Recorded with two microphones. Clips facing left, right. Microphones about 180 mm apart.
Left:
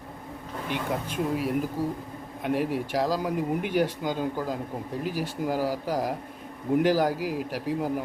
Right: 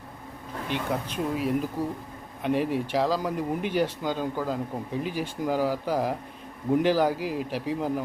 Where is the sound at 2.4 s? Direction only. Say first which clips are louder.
Right 1 dB; 10° left (ahead or behind).